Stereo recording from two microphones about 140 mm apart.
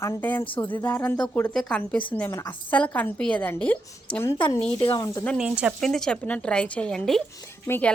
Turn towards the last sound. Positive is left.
turn(degrees=15)  # may be behind; listen again after turning